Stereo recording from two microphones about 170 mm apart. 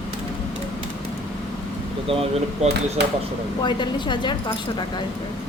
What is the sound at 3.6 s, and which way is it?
Speech, 25° left (ahead or behind).